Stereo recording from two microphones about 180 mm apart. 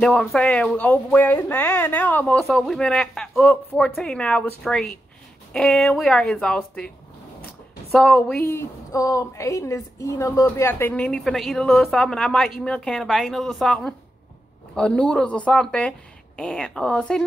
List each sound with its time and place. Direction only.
0.0 s speech: centre (ahead or behind)
7.9 s a woman's voice: 5° left (ahead or behind)